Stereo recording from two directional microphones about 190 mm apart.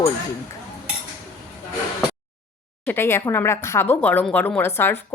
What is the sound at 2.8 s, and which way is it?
Speech, 10° left (ahead or behind).